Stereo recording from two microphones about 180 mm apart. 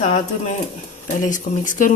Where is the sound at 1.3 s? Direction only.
45° left (ahead or behind).